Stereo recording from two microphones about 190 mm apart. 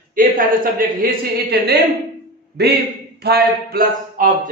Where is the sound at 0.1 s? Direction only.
45° right (ahead or behind).